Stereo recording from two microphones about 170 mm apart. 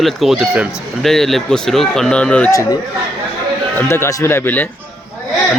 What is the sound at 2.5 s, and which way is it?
Speech, 20° left (ahead or behind).